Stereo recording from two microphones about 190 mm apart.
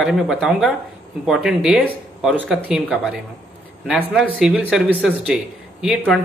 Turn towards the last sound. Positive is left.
turn(degrees=0)  # may be behind; listen again after turning